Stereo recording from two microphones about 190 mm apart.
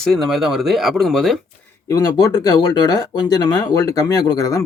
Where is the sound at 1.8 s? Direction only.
20° left (ahead or behind).